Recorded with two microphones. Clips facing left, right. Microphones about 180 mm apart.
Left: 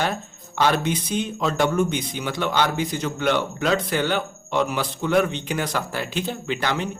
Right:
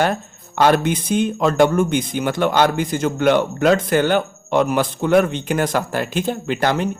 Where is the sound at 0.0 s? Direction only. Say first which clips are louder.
Right 6 dB; 50° right (ahead or behind).